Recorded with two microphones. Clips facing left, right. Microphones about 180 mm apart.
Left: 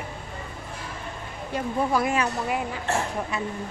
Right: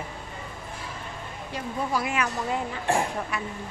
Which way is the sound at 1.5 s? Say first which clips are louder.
Left 5 dB; 55° left (ahead or behind).